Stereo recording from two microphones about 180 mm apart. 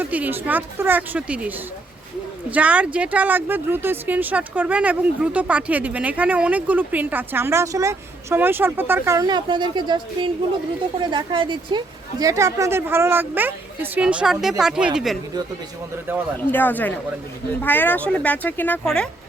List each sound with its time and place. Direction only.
0.0 s a woman's voice: 10° right (ahead or behind)
16.1 s speech: 10° right (ahead or behind)
16.5 s speech: 10° left (ahead or behind)